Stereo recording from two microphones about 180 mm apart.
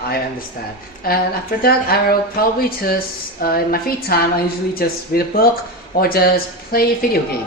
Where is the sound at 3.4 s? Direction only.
55° left (ahead or behind).